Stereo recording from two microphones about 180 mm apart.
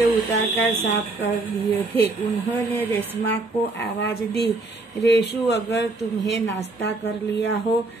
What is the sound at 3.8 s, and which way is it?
Speech, 70° left (ahead or behind).